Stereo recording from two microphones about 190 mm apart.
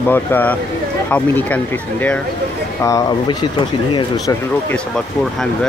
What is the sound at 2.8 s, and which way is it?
Speech, 20° left (ahead or behind).